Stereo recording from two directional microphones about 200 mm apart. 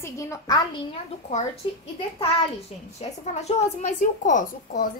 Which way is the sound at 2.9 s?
35° left (ahead or behind).